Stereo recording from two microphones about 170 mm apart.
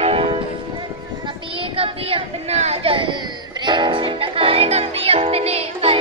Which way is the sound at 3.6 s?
25° right (ahead or behind).